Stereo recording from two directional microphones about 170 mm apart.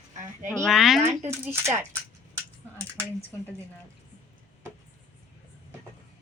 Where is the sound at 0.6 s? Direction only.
Centre (ahead or behind).